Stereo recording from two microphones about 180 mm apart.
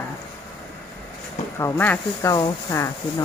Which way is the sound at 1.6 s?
15° left (ahead or behind).